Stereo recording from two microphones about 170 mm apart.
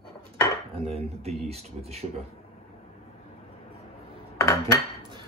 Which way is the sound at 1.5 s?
40° right (ahead or behind).